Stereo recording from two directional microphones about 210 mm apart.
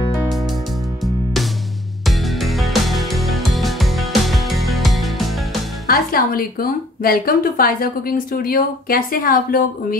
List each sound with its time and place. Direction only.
1.0 s music: centre (ahead or behind)
5.9 s a woman's voice: 45° left (ahead or behind)